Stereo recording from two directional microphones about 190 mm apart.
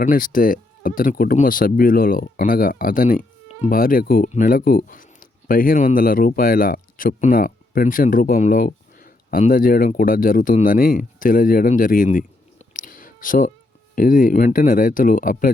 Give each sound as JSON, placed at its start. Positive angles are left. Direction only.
{"t": 0.0, "sound": "speech", "side_deg": 45}